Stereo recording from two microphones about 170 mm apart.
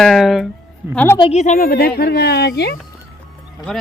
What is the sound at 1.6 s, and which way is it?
Speech, 65° left (ahead or behind).